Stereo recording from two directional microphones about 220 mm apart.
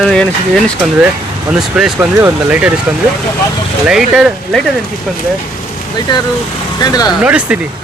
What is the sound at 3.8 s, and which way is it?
Speech, centre (ahead or behind).